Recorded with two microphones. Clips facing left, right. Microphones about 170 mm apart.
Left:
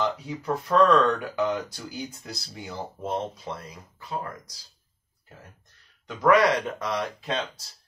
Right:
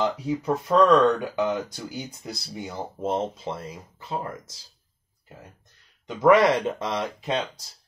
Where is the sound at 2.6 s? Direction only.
25° right (ahead or behind).